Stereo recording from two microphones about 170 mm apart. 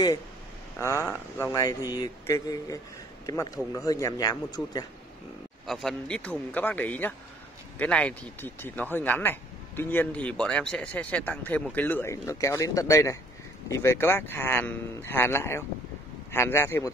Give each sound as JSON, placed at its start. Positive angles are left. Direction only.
{"t": 0.7, "sound": "speech", "side_deg": 15}
{"t": 5.7, "sound": "speech", "side_deg": 0}